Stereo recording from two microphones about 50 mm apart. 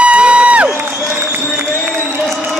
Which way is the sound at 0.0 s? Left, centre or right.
Right.